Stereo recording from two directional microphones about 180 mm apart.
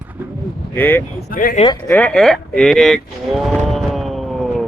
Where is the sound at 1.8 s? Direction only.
10° left (ahead or behind).